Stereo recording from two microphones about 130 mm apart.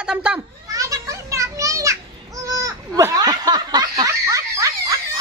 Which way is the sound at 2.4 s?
25° right (ahead or behind).